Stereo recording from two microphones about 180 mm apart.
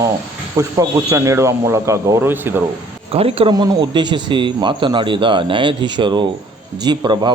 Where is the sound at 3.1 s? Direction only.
30° right (ahead or behind).